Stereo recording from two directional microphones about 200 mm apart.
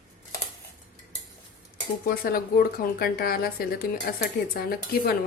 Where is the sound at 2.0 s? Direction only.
45° left (ahead or behind).